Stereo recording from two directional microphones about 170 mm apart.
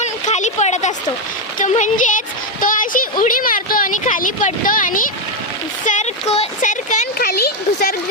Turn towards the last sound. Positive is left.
turn(degrees=65)  # may be behind; listen again after turning